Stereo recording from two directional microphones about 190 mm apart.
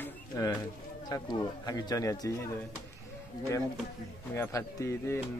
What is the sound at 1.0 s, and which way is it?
Speech, 20° left (ahead or behind).